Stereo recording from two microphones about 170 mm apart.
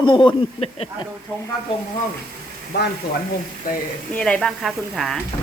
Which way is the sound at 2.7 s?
75° left (ahead or behind).